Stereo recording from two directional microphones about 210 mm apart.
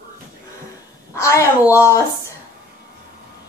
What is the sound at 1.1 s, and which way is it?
Speech, 15° left (ahead or behind).